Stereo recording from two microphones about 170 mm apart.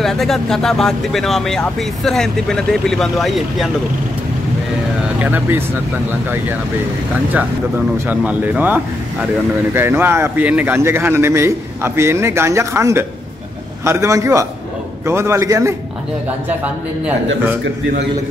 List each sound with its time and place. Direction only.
0.0 s speech: centre (ahead or behind)
5.2 s a man's voice: 10° right (ahead or behind)
8.1 s a man's voice: 10° right (ahead or behind)